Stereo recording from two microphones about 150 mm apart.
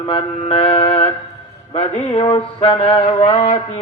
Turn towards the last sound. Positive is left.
turn(degrees=40)  # may be behind; listen again after turning